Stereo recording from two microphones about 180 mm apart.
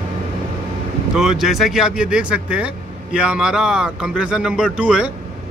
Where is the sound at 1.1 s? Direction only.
5° right (ahead or behind).